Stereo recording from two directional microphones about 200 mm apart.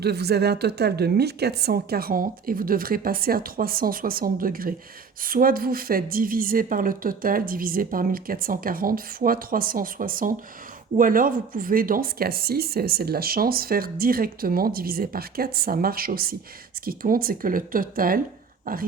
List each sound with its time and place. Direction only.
0.0 s speech: 55° right (ahead or behind)